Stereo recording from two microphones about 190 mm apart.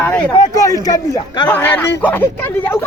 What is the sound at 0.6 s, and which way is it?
Speech, 20° left (ahead or behind).